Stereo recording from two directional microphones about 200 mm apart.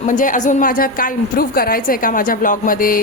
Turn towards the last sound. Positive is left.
turn(degrees=45)  # may be behind; listen again after turning